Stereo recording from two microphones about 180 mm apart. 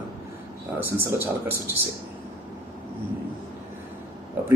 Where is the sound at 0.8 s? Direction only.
10° right (ahead or behind).